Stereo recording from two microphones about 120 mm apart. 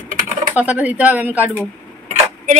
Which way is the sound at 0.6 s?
10° right (ahead or behind).